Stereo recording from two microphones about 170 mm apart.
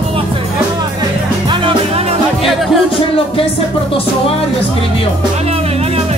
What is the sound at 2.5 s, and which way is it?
Music, centre (ahead or behind).